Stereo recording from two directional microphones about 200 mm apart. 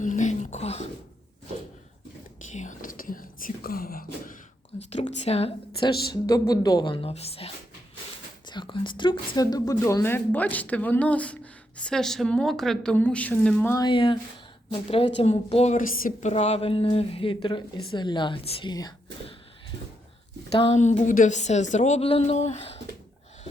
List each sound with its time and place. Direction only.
0.0 s dog: 40° left (ahead or behind)
2.5 s whispering: 40° left (ahead or behind)
4.9 s a sound: 35° left (ahead or behind)
6.1 s a woman's voice: 20° left (ahead or behind)
13.8 s a woman's voice: 25° left (ahead or behind)
20.6 s a woman's voice: 35° left (ahead or behind)